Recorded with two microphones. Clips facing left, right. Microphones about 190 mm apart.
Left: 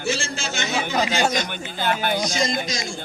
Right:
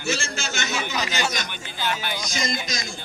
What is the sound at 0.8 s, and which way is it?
Speech, 55° left (ahead or behind).